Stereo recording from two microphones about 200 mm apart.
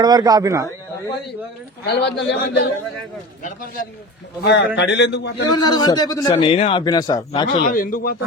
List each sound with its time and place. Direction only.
0.0 s speech: 20° right (ahead or behind)
1.8 s a man's voice: 55° left (ahead or behind)
4.4 s a man's voice: 55° left (ahead or behind)
5.5 s a man's voice: 20° left (ahead or behind)
7.6 s a man's voice: 45° left (ahead or behind)